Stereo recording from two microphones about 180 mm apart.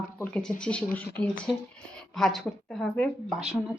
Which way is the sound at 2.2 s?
Centre (ahead or behind).